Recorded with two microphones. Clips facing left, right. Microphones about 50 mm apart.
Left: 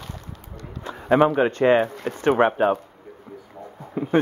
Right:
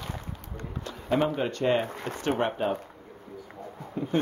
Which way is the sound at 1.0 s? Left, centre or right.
Left.